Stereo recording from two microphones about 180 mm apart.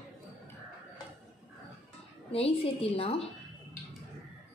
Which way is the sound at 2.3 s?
30° left (ahead or behind).